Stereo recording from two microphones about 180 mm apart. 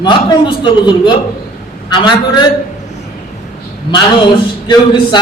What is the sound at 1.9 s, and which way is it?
Speech, 25° left (ahead or behind).